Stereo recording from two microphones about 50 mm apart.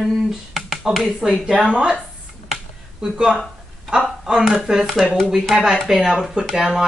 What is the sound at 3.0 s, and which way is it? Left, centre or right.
Speech, centre.